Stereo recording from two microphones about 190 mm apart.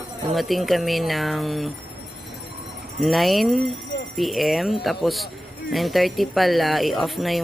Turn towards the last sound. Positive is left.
turn(degrees=0)  # may be behind; listen again after turning